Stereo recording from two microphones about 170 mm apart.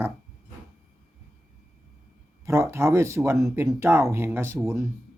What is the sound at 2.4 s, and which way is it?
Speech, 15° right (ahead or behind).